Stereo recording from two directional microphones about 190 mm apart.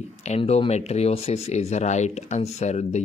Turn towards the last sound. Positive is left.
turn(degrees=35)  # may be behind; listen again after turning